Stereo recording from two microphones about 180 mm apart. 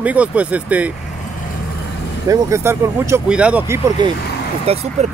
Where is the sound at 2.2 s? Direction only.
15° right (ahead or behind).